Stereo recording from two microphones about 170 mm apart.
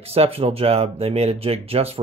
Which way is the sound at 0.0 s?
35° right (ahead or behind).